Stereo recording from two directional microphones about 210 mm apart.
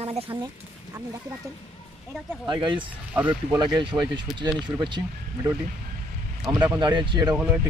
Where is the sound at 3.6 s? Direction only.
20° right (ahead or behind).